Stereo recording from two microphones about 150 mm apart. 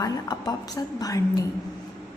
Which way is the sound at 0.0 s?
25° left (ahead or behind).